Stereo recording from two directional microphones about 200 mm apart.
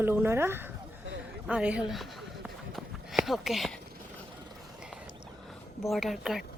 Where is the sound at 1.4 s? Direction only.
5° right (ahead or behind).